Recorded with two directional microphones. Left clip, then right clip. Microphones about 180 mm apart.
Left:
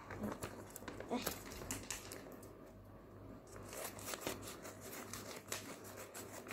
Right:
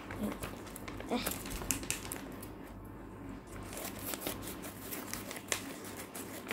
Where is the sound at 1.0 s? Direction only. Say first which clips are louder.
Right 6 dB; 10° right (ahead or behind).